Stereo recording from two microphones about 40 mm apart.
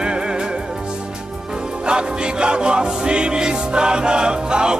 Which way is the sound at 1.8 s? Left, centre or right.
Right.